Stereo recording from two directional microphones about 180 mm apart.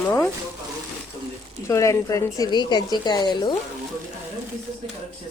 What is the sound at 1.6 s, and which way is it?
A woman's voice, 15° left (ahead or behind).